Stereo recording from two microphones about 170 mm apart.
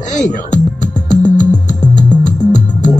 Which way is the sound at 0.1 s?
45° left (ahead or behind).